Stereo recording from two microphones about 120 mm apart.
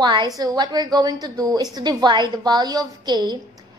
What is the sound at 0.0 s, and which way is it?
A woman's voice, 40° right (ahead or behind).